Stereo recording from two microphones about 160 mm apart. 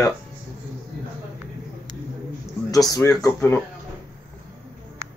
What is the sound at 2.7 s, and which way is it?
Speech, 20° left (ahead or behind).